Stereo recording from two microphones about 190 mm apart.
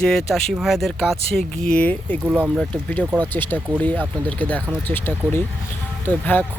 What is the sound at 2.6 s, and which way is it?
Speech, 5° left (ahead or behind).